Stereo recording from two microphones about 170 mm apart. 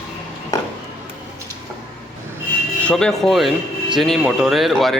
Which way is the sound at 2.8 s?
5° left (ahead or behind).